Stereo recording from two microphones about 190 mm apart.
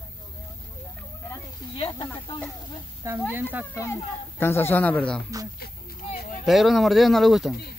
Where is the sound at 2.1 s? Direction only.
25° left (ahead or behind).